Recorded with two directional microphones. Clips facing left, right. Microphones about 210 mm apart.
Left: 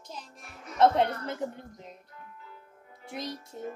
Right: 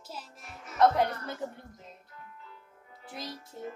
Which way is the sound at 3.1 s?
20° left (ahead or behind).